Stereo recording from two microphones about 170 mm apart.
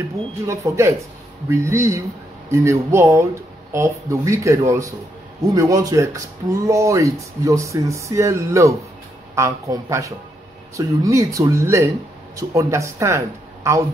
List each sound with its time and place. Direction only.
0.5 s speech: 15° right (ahead or behind)